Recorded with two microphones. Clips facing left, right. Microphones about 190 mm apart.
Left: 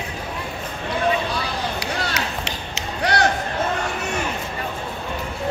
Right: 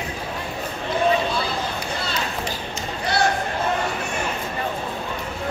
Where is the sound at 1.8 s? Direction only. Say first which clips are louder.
Left 1 dB; 75° left (ahead or behind).